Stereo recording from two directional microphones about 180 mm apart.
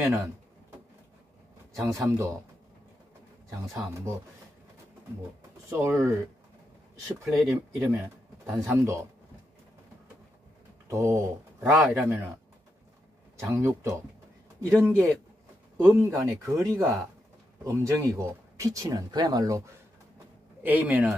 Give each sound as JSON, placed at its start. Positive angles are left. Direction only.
{"t": 0.0, "sound": "a man's voice", "side_deg": -15}
{"t": 1.7, "sound": "a man's voice", "side_deg": -15}
{"t": 3.4, "sound": "a man's voice", "side_deg": -15}
{"t": 5.7, "sound": "a man's voice", "side_deg": -15}
{"t": 7.4, "sound": "a man's voice", "side_deg": -15}
{"t": 10.9, "sound": "a man's voice", "side_deg": -15}
{"t": 13.4, "sound": "a man's voice", "side_deg": -15}